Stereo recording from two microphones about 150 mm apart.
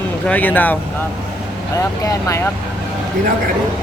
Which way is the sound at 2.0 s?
20° left (ahead or behind).